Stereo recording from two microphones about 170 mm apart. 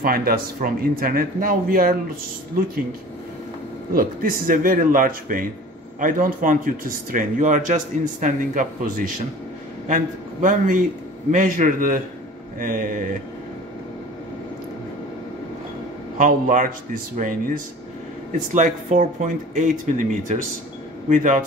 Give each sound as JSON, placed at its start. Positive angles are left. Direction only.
{"t": 0.0, "sound": "speech", "side_deg": -60}
{"t": 3.9, "sound": "speech", "side_deg": -55}
{"t": 16.2, "sound": "speech", "side_deg": -50}